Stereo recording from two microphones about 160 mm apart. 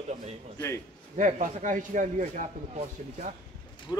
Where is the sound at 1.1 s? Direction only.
50° right (ahead or behind).